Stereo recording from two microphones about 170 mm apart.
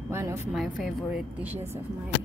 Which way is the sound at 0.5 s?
Centre (ahead or behind).